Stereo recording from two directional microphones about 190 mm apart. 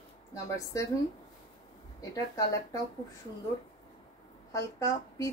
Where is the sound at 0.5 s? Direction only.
15° left (ahead or behind).